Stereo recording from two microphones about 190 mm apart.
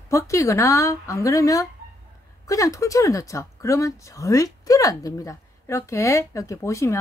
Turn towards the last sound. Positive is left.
turn(degrees=15)  # may be behind; listen again after turning